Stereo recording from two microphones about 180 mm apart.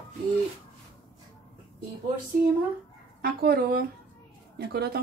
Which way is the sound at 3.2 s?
60° right (ahead or behind).